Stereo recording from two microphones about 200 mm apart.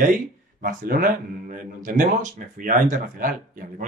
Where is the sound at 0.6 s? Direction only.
45° right (ahead or behind).